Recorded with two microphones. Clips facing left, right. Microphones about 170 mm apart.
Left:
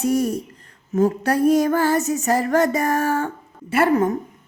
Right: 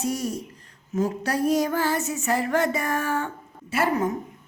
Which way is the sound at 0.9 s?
55° left (ahead or behind).